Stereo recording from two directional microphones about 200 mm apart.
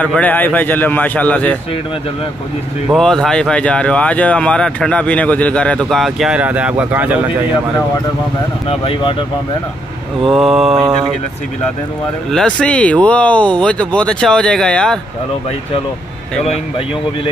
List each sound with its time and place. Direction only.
0.0 s speech: 5° left (ahead or behind)
2.9 s speech: centre (ahead or behind)
8.6 s speech: 30° left (ahead or behind)
10.2 s speech: centre (ahead or behind)
12.3 s speech: 5° left (ahead or behind)